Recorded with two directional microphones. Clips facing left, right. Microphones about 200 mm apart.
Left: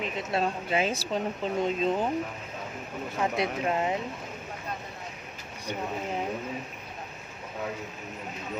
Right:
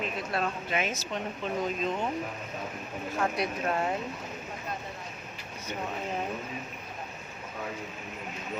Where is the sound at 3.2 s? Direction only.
20° left (ahead or behind).